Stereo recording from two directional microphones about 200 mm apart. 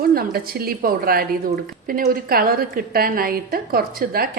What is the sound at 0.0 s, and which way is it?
A woman's voice, 50° right (ahead or behind).